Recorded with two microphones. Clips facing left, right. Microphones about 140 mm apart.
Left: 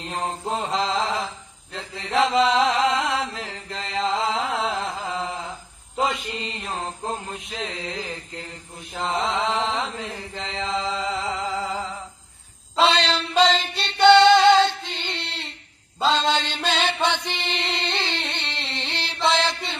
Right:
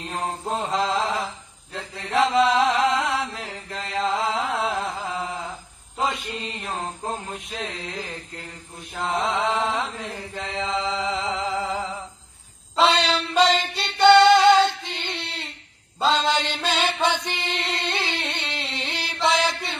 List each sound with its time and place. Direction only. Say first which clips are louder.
0.5 s mantra: right 1 dB; centre (ahead or behind)
3.3 s mantra: even; 5° right (ahead or behind)
4.4 s a sound: even; centre (ahead or behind)
6.8 s mantra: left 1 dB; centre (ahead or behind)
7.9 s a sound: left 2 dB; centre (ahead or behind)
8.9 s mantra: even; centre (ahead or behind)
10.8 s music: right 1 dB; 20° right (ahead or behind)
12.8 s singing: even; 10° right (ahead or behind)
16.0 s chant: even; 5° right (ahead or behind)